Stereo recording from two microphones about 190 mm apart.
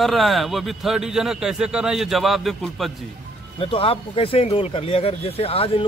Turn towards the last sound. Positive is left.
turn(degrees=30)  # may be behind; listen again after turning